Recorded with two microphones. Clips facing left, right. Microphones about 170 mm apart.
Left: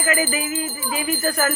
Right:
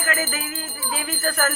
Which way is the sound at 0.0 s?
5° left (ahead or behind).